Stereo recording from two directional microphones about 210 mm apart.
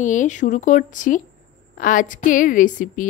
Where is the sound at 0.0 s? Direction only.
35° left (ahead or behind).